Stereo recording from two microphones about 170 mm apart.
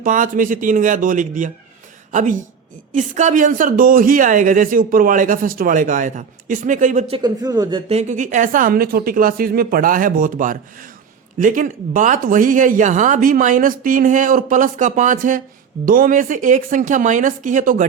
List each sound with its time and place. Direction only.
0.0 s speech: 50° right (ahead or behind)
7.1 s a man's voice: 25° right (ahead or behind)
7.9 s speech: 40° right (ahead or behind)